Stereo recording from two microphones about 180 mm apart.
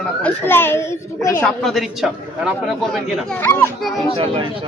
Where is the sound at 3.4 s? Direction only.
15° left (ahead or behind).